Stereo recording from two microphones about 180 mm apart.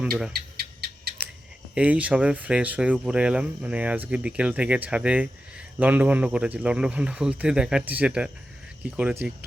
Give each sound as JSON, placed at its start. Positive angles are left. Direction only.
{"t": 0.0, "sound": "speech", "side_deg": -5}
{"t": 0.3, "sound": "a sound", "side_deg": -60}
{"t": 1.7, "sound": "speech", "side_deg": -5}